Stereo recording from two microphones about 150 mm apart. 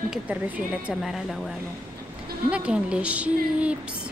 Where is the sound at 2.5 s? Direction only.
5° right (ahead or behind).